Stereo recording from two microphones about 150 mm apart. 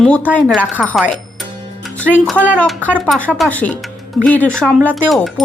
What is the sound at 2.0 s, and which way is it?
Speech, 10° left (ahead or behind).